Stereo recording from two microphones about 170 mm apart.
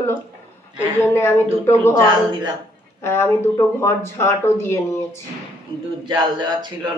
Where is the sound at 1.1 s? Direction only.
15° left (ahead or behind).